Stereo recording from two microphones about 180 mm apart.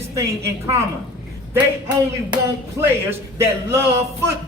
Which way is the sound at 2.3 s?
10° right (ahead or behind).